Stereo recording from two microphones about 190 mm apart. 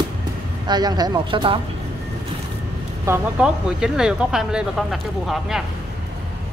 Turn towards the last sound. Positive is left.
turn(degrees=0)  # may be behind; listen again after turning